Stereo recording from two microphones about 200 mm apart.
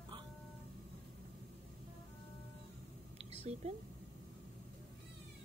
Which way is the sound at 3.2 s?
30° right (ahead or behind).